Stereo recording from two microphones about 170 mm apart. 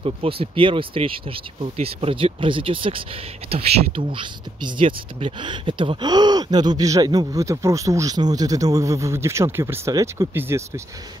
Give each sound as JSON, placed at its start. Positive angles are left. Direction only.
{"t": 0.0, "sound": "speech", "side_deg": -35}